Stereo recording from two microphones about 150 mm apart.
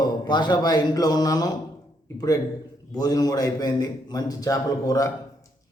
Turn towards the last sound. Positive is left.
turn(degrees=25)  # may be behind; listen again after turning